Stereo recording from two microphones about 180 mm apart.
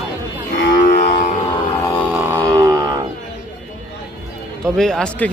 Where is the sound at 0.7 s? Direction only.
45° left (ahead or behind).